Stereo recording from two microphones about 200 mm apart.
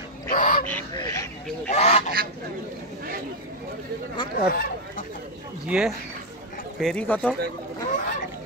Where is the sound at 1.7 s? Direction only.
30° left (ahead or behind).